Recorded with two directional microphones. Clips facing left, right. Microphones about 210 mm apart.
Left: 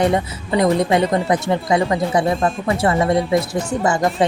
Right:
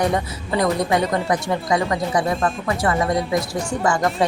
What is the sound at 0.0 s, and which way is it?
A woman's voice, 25° left (ahead or behind).